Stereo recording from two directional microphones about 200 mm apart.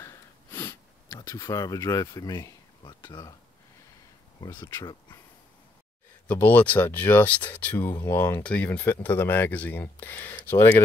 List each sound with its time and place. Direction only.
0.0 s a sound: 15° left (ahead or behind)
1.3 s speech: 15° left (ahead or behind)
4.4 s speech: 20° left (ahead or behind)
6.2 s speech: 10° left (ahead or behind)